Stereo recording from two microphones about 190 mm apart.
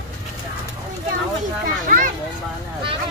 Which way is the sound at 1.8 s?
45° right (ahead or behind).